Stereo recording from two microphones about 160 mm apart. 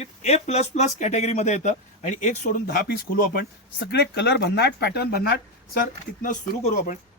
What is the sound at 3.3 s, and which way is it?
Speech, 85° left.